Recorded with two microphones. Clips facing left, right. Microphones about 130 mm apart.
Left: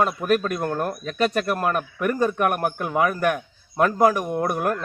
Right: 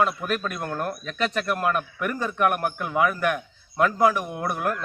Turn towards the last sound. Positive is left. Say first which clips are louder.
# left 4 dB
turn(degrees=45)  # may be behind; listen again after turning